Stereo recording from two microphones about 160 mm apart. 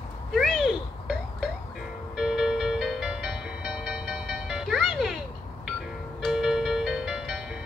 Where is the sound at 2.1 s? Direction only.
Centre (ahead or behind).